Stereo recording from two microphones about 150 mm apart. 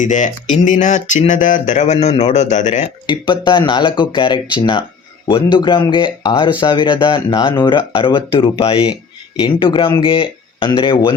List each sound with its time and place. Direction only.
0.0 s a sound: 55° left (ahead or behind)
1.3 s speech: 60° left (ahead or behind)
3.1 s speech: 30° left (ahead or behind)